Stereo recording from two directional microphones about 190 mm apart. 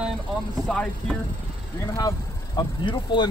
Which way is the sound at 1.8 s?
15° left (ahead or behind).